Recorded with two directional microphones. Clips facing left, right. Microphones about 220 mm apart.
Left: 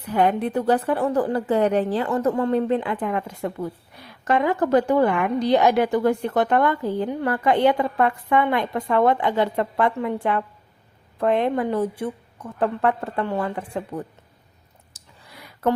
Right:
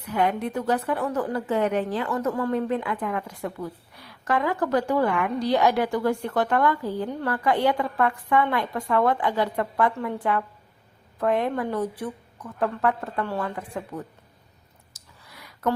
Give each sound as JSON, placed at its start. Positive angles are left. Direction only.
{"t": 0.0, "sound": "a woman's voice", "side_deg": 35}
{"t": 13.6, "sound": "a woman's voice", "side_deg": 30}
{"t": 14.9, "sound": "a sound", "side_deg": 30}